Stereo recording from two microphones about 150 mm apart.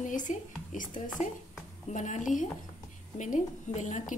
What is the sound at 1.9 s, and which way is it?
A woman's voice, 55° left (ahead or behind).